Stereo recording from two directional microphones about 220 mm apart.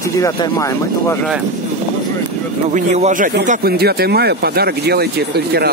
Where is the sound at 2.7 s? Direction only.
35° right (ahead or behind).